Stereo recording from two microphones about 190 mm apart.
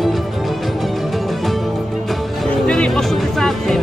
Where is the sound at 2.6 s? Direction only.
5° left (ahead or behind).